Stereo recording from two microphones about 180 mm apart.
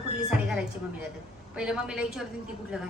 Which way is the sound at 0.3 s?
5° right (ahead or behind).